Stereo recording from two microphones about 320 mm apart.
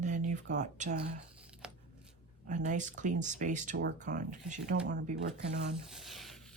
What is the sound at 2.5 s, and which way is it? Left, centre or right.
Speech, right.